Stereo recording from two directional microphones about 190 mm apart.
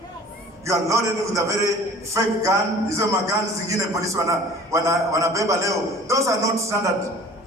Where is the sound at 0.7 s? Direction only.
15° right (ahead or behind).